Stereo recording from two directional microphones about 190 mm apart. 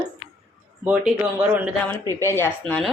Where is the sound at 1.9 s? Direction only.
15° left (ahead or behind).